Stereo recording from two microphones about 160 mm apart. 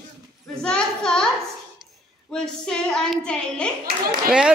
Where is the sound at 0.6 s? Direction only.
5° left (ahead or behind).